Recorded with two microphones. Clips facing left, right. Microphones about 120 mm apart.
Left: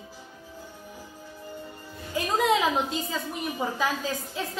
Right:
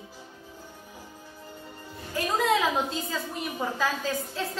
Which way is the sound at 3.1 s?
15° left (ahead or behind).